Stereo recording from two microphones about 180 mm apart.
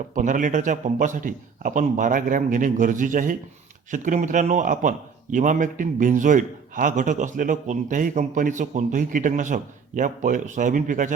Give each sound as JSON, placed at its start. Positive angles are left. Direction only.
{"t": 0.1, "sound": "a man's voice", "side_deg": -45}